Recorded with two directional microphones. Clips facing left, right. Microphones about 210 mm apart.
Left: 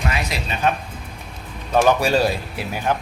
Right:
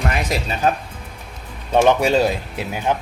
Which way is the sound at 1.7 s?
25° right (ahead or behind).